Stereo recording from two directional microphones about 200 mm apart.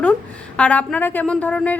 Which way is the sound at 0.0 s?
5° left (ahead or behind).